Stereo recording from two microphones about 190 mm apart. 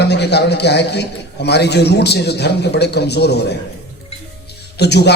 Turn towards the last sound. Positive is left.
turn(degrees=60)  # may be behind; listen again after turning